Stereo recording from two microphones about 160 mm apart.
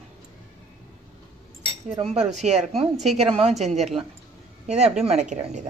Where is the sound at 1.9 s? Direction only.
40° right (ahead or behind).